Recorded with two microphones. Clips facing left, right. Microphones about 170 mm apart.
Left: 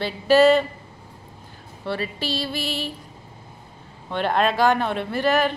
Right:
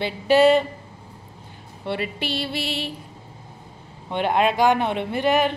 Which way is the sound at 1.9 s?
20° right (ahead or behind).